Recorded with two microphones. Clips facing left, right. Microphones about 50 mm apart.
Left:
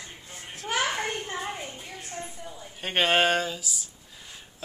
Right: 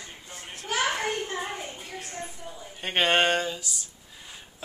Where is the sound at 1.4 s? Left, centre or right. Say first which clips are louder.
Even; centre.